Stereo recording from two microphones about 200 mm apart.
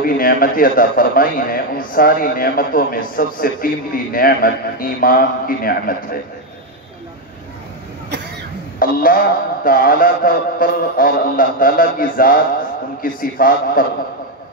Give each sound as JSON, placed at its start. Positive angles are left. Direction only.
{"t": 0.0, "sound": "a man's voice", "side_deg": 45}
{"t": 8.7, "sound": "a man's voice", "side_deg": 45}